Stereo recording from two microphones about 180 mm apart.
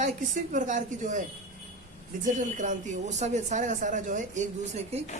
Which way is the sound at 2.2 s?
45° right (ahead or behind).